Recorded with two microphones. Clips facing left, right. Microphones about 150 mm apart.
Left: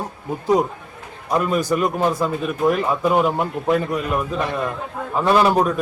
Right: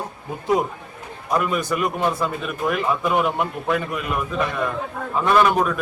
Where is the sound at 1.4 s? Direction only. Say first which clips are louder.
Left 4 dB; 35° left (ahead or behind).